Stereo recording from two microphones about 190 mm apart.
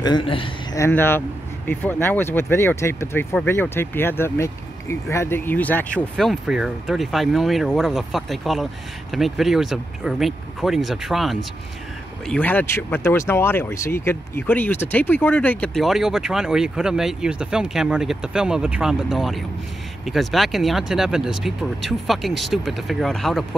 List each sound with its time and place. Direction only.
0.0 s speech: 25° left (ahead or behind)
0.7 s speech: 15° left (ahead or behind)